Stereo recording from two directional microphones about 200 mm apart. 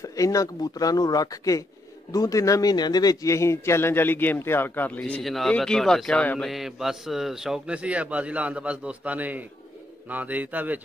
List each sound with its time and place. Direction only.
0.0 s a man's voice: 15° left (ahead or behind); by 10.8 s 10° right (ahead or behind)